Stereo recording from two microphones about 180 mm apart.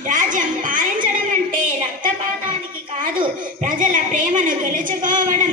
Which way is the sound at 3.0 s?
45° right (ahead or behind).